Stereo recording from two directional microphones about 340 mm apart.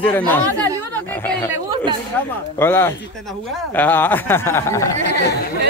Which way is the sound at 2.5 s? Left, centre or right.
Centre.